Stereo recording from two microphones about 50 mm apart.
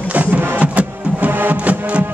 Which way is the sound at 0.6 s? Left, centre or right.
Right.